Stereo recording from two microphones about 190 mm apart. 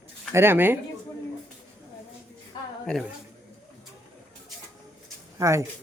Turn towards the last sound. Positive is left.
turn(degrees=-15)  # may be behind; listen again after turning